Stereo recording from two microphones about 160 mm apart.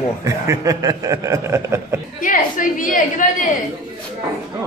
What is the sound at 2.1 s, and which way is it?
A woman's voice, 55° left (ahead or behind).